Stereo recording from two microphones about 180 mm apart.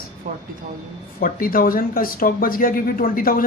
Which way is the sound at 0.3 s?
50° right (ahead or behind).